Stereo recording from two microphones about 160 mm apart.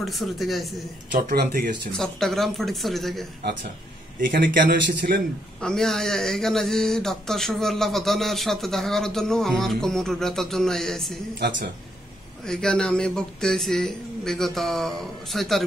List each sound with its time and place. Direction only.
0.0 s speech: centre (ahead or behind)
1.3 s a man's voice: 70° right (ahead or behind)
1.9 s speech: 5° left (ahead or behind)
4.3 s a man's voice: 70° right (ahead or behind)
5.6 s speech: 5° left (ahead or behind)
12.4 s speech: 5° left (ahead or behind)